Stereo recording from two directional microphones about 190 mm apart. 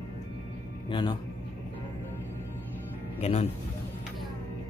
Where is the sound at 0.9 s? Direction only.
25° left (ahead or behind).